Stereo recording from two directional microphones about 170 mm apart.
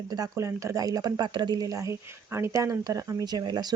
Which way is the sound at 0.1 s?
20° right (ahead or behind).